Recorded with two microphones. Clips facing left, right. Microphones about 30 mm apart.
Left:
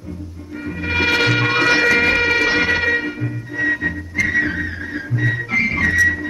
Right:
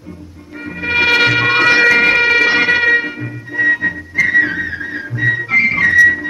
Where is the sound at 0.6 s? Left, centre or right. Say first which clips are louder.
Right 5 dB; right.